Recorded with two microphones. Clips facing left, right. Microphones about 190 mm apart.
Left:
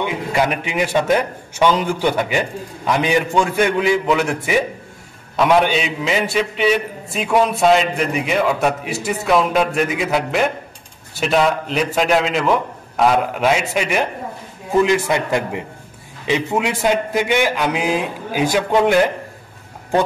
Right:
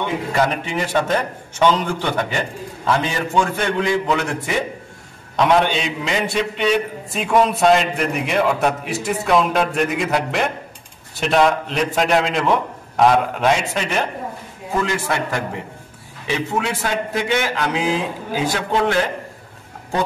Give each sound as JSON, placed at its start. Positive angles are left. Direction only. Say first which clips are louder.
{"t": 0.0, "sound": "a man's voice", "louder": "left 1 dB", "side_deg": 10}